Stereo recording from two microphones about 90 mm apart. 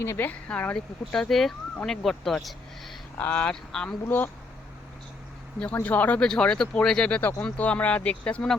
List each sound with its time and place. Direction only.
0.0 s speech: 30° left (ahead or behind)
0.3 s speech: 15° left (ahead or behind)
3.2 s speech: 15° left (ahead or behind)
4.0 s speech: 20° left (ahead or behind)
5.8 s speech: 20° left (ahead or behind)
7.2 s speech: 25° left (ahead or behind)
7.4 s speech: 15° left (ahead or behind)